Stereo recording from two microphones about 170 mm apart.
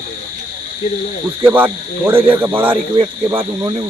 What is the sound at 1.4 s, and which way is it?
Cricket, 10° right (ahead or behind).